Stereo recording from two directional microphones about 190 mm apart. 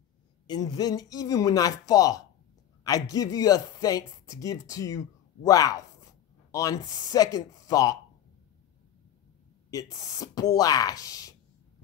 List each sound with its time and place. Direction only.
0.5 s speech: 20° left (ahead or behind)
9.7 s speech: 20° left (ahead or behind)